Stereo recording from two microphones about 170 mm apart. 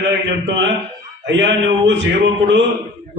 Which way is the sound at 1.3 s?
90° right.